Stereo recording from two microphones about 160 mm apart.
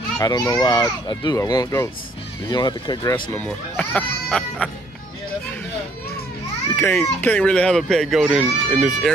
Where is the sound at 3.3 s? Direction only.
10° left (ahead or behind).